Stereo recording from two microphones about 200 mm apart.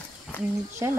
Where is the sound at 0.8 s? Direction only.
15° right (ahead or behind).